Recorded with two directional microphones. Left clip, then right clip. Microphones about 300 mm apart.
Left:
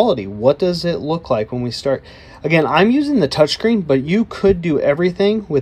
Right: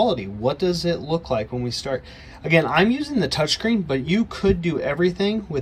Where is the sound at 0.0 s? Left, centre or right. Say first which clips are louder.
Left 6 dB; centre.